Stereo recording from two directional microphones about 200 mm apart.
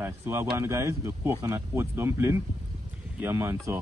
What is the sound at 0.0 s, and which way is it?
Speech, 15° right (ahead or behind).